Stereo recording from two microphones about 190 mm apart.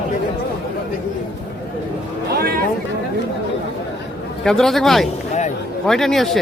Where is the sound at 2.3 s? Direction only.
55° right (ahead or behind).